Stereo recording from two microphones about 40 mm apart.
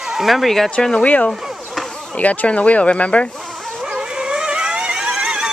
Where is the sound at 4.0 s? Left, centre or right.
Centre.